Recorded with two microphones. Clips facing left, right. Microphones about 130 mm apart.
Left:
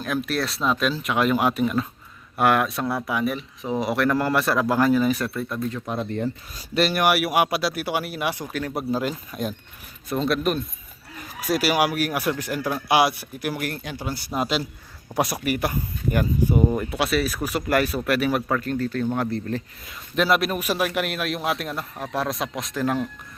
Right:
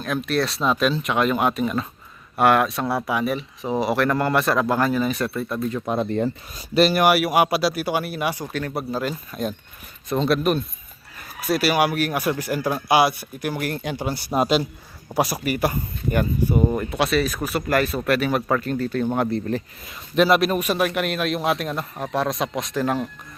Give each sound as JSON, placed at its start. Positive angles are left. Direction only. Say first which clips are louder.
{"t": 0.0, "sound": "a man's voice", "louder": "right 2 dB", "side_deg": 5}
{"t": 5.9, "sound": "speech", "louder": "right 7 dB", "side_deg": -30}
{"t": 6.6, "sound": "a man's voice", "louder": "right 4 dB", "side_deg": -10}
{"t": 8.7, "sound": "speech", "louder": "left 3 dB", "side_deg": 15}
{"t": 10.2, "sound": "a man's voice", "louder": "right 3 dB", "side_deg": 0}
{"t": 11.3, "sound": "speech", "louder": "right 1 dB", "side_deg": 15}
{"t": 12.3, "sound": "a man's voice", "louder": "right 2 dB", "side_deg": -5}
{"t": 13.7, "sound": "speech", "louder": "right 4 dB", "side_deg": -25}
{"t": 15.1, "sound": "a man's voice", "louder": "right 1 dB", "side_deg": 0}
{"t": 18.4, "sound": "a man's voice", "louder": "right 2 dB", "side_deg": -5}
{"t": 19.1, "sound": "speech", "louder": "right 3 dB", "side_deg": -15}
{"t": 19.9, "sound": "a man's voice", "louder": "right 4 dB", "side_deg": 0}